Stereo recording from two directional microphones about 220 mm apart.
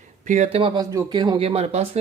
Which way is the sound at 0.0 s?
35° right (ahead or behind).